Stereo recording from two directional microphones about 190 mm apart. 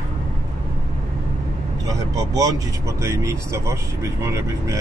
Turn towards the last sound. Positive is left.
turn(degrees=-15)  # may be behind; listen again after turning